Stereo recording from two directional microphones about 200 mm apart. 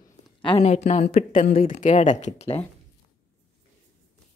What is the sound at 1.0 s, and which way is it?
A woman's voice, 45° left (ahead or behind).